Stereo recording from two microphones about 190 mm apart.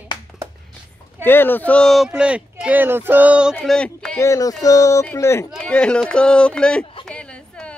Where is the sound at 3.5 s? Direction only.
5° left (ahead or behind).